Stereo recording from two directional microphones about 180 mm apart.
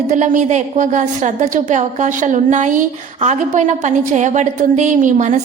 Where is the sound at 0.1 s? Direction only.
40° right (ahead or behind).